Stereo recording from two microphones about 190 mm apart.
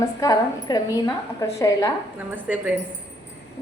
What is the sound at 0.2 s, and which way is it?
A woman's voice, 20° left (ahead or behind).